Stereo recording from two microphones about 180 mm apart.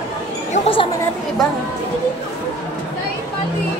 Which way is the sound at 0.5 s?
35° left (ahead or behind).